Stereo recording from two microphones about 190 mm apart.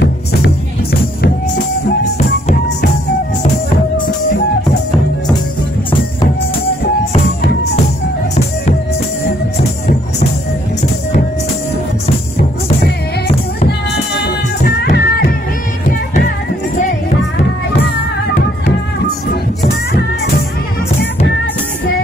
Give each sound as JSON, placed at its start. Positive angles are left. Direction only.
{"t": 1.2, "sound": "music", "side_deg": 55}
{"t": 14.2, "sound": "music", "side_deg": 55}